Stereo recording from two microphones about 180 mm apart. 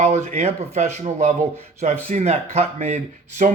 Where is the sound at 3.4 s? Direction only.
50° right (ahead or behind).